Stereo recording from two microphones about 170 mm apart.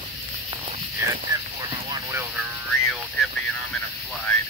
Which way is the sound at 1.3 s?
25° right (ahead or behind).